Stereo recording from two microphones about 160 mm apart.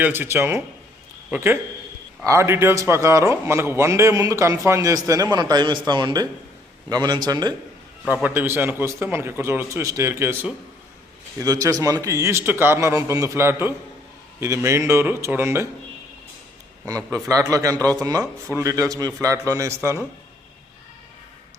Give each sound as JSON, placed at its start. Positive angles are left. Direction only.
{"t": 0.0, "sound": "a man's voice", "side_deg": -15}
{"t": 8.0, "sound": "a man's voice", "side_deg": -10}
{"t": 17.2, "sound": "a man's voice", "side_deg": -20}